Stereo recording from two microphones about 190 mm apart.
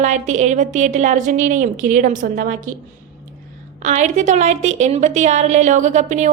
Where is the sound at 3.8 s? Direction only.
40° right (ahead or behind).